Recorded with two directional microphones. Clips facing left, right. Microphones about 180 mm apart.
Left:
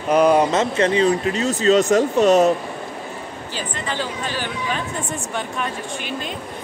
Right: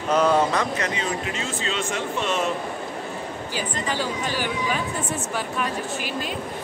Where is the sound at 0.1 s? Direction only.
15° left (ahead or behind); by 2.5 s 40° left (ahead or behind).